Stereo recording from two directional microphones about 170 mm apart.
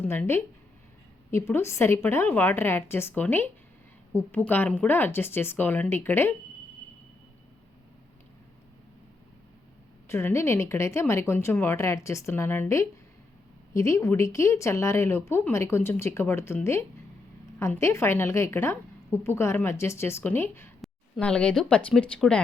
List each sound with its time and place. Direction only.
0.0 s speech: 10° left (ahead or behind)
10.1 s speech: 15° left (ahead or behind)